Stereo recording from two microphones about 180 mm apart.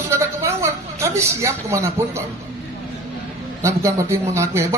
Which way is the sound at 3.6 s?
15° right (ahead or behind).